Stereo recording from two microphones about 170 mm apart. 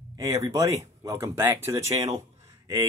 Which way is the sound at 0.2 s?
20° right (ahead or behind).